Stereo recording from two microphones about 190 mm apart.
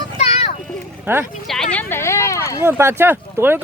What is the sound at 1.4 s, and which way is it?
Speech, 5° left (ahead or behind).